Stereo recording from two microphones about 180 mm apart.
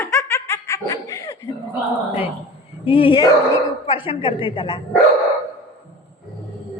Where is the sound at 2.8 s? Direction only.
30° left (ahead or behind).